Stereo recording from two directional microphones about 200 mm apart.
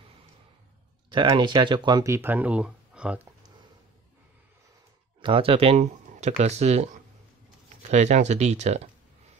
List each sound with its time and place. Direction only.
1.1 s speech: 25° right (ahead or behind); by 3.2 s 5° right (ahead or behind)
5.2 s speech: 25° right (ahead or behind)